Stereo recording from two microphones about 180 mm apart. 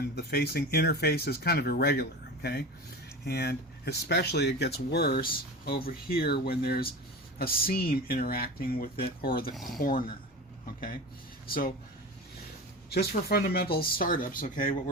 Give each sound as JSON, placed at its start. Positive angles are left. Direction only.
{"t": 0.2, "sound": "speech", "side_deg": 60}
{"t": 12.9, "sound": "speech", "side_deg": 60}